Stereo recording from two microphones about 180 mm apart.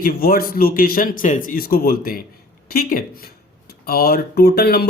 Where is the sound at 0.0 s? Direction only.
55° left (ahead or behind).